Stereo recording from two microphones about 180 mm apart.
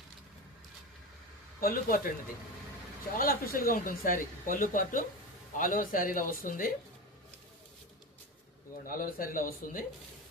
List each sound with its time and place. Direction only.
1.6 s speech: 55° left (ahead or behind)
3.2 s speech: 55° left (ahead or behind)
8.9 s speech: 50° left (ahead or behind)